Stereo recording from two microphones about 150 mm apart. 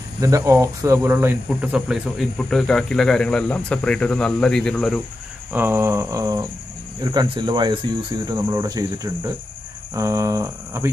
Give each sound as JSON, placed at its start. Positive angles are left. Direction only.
{"t": 0.2, "sound": "speech", "side_deg": -20}
{"t": 5.5, "sound": "a sound", "side_deg": -15}
{"t": 7.0, "sound": "speech", "side_deg": -30}